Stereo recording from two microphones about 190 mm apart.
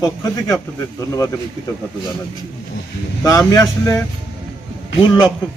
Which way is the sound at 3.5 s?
15° left (ahead or behind).